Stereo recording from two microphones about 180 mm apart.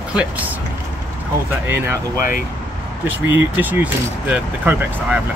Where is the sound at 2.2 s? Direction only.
50° left (ahead or behind).